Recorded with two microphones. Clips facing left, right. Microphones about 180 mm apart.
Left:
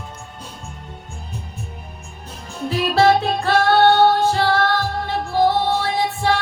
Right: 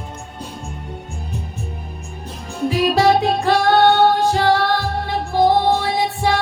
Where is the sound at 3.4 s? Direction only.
15° right (ahead or behind).